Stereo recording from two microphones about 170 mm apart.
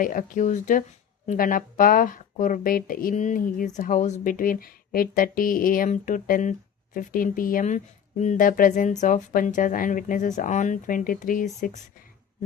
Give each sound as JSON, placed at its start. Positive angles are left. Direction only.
{"t": 0.0, "sound": "speech", "side_deg": 55}